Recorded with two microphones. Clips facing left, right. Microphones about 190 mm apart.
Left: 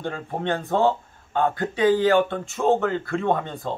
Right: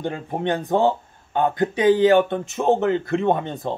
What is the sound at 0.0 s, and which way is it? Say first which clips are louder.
Speech: right 3 dB; 15° right (ahead or behind).